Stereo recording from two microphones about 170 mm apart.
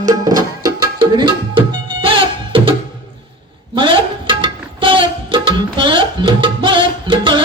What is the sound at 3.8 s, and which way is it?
Tabla, 30° right (ahead or behind).